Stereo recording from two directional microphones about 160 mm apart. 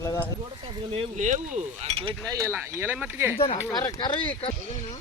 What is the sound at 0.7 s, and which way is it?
Speech, 35° right (ahead or behind).